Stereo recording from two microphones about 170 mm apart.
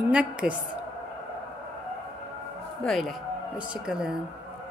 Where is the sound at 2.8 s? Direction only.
Centre (ahead or behind).